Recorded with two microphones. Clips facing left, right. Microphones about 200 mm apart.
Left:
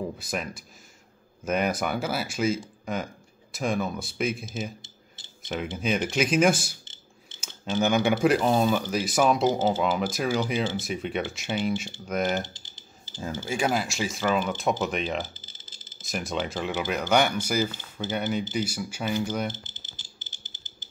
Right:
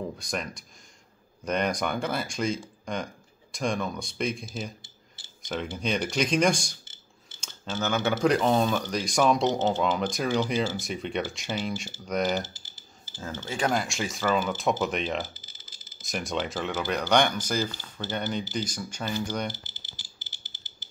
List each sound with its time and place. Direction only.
0.0 s speech: 5° left (ahead or behind)
5.8 s speech: 5° left (ahead or behind)
6.8 s a sound: 20° left (ahead or behind)
7.3 s speech: 10° left (ahead or behind)
13.1 s speech: 10° left (ahead or behind)